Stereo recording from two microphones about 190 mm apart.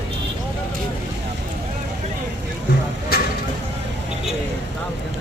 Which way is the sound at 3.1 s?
55° left (ahead or behind).